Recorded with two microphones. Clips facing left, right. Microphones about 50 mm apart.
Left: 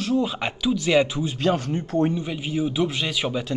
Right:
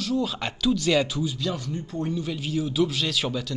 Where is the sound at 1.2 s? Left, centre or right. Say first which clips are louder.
Left 6 dB; left.